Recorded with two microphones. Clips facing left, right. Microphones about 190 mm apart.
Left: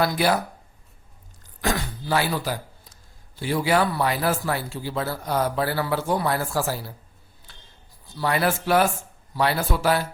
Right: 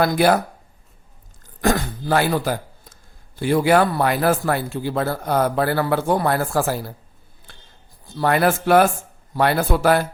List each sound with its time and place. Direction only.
0.0 s speech: 55° right (ahead or behind)
1.6 s speech: 50° right (ahead or behind)
7.5 s a sound: 50° right (ahead or behind)
8.1 s speech: 55° right (ahead or behind)